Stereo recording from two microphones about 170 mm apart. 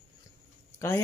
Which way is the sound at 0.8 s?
15° left (ahead or behind).